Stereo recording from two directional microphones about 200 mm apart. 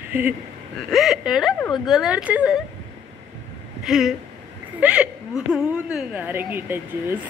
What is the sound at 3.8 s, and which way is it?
A woman's voice, centre (ahead or behind).